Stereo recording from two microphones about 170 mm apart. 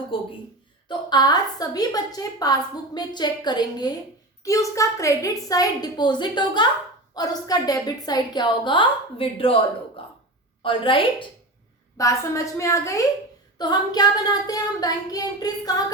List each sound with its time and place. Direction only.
0.1 s a sound: 30° left (ahead or behind)
0.9 s a woman's voice: 25° left (ahead or behind)
11.9 s a woman's voice: 20° left (ahead or behind)